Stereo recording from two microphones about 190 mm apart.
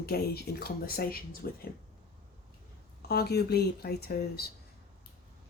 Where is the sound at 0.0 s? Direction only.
55° left (ahead or behind).